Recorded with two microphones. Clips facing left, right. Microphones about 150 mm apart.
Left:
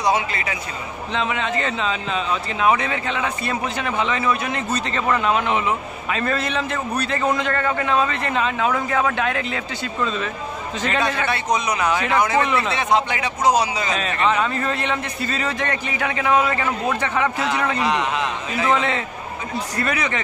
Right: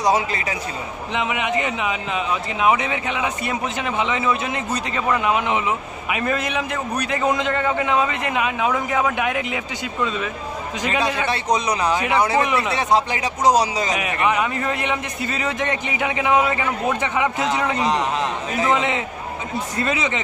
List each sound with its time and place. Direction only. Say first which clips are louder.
0.0 s a man's voice: right 1 dB; 35° right (ahead or behind)
1.1 s a man's voice: right 1 dB; 15° right (ahead or behind)
11.5 s a man's voice: right 1 dB; 35° right (ahead or behind)
12.4 s a man's voice: even; 15° right (ahead or behind)
12.7 s a man's voice: right 1 dB; 35° right (ahead or behind)
13.9 s a man's voice: left 1 dB; 15° right (ahead or behind)
17.8 s a man's voice: right 1 dB; 35° right (ahead or behind)
18.6 s a man's voice: even; 15° right (ahead or behind)